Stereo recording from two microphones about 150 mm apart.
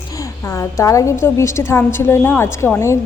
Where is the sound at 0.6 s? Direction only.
20° left (ahead or behind).